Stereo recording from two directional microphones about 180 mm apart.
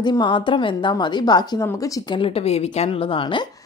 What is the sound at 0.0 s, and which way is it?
A woman's voice, 25° left (ahead or behind).